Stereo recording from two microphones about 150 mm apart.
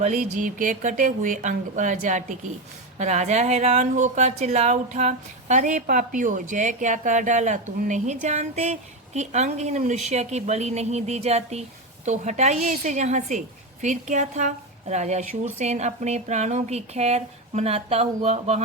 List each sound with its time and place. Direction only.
0.0 s a woman's voice: 55° right (ahead or behind)